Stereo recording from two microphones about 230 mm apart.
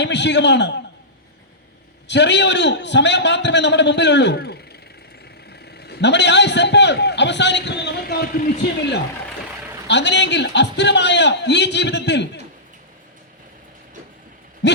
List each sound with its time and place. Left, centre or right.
0.0 s a man's voice: left
2.0 s a man's voice: left
9.8 s a man's voice: left